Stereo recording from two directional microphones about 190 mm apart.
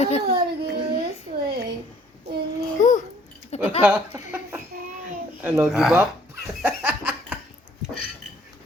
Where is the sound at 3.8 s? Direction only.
10° right (ahead or behind).